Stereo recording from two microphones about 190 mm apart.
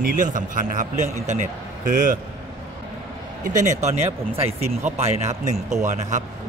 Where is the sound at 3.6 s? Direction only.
40° right (ahead or behind).